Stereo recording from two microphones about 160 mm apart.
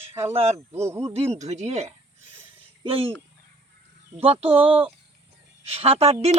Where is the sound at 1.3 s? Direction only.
45° right (ahead or behind).